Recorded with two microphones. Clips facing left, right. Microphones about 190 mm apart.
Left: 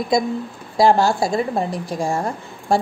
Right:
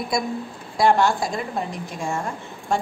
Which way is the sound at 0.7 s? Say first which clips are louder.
Left 3 dB; 30° left (ahead or behind).